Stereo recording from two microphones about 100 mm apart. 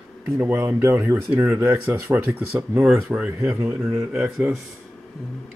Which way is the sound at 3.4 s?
30° right (ahead or behind).